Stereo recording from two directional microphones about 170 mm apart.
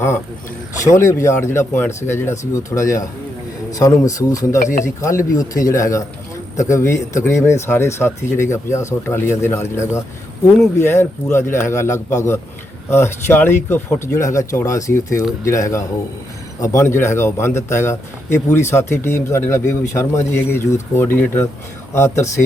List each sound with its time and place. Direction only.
0.9 s a man's voice: 15° left (ahead or behind)